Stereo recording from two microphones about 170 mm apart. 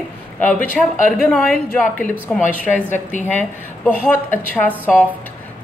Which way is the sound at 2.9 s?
45° left (ahead or behind).